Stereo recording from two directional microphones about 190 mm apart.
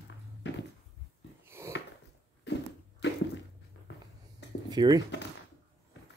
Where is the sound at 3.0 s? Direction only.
65° left (ahead or behind).